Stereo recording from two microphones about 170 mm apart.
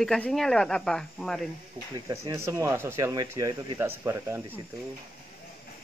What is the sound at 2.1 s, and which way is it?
Speech, 20° right (ahead or behind).